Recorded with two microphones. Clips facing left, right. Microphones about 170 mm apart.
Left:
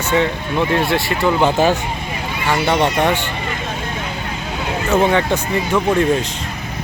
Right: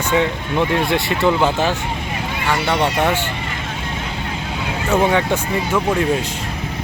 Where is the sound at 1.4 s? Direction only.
15° left (ahead or behind).